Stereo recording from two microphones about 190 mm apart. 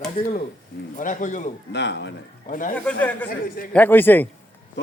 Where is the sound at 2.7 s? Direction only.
10° left (ahead or behind).